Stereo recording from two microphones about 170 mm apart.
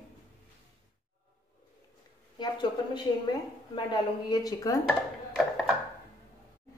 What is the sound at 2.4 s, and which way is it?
A woman's voice, 25° left (ahead or behind).